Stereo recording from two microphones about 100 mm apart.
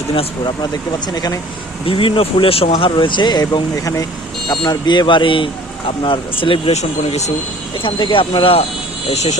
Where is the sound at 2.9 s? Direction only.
50° left (ahead or behind).